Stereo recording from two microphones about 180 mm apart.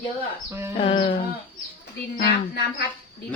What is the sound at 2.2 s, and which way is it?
Speech, 65° left (ahead or behind).